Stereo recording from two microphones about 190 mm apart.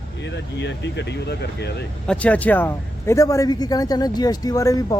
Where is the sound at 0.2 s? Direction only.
65° left (ahead or behind).